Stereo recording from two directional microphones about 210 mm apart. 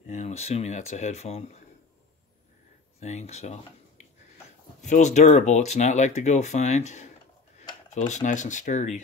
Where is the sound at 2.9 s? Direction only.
30° left (ahead or behind).